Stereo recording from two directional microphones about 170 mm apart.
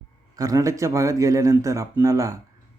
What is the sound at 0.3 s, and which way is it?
Speech, 20° right (ahead or behind).